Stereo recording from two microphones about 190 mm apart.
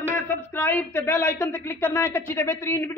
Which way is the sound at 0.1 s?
10° left (ahead or behind).